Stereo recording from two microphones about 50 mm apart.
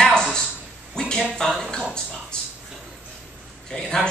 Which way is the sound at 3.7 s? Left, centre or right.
Centre.